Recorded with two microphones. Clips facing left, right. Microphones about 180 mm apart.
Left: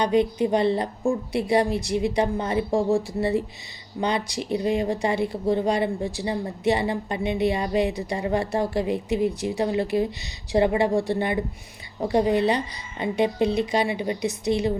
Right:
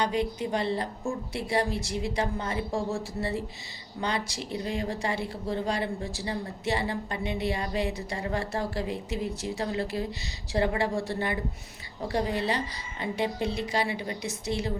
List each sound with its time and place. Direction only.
0.0 s a woman's voice: 20° left (ahead or behind)